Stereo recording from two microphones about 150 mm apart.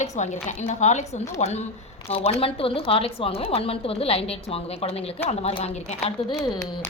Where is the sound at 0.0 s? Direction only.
50° left (ahead or behind).